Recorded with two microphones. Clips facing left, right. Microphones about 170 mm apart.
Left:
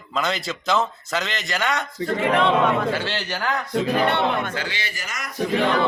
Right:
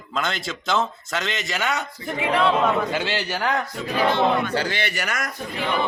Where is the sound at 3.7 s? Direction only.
65° left (ahead or behind).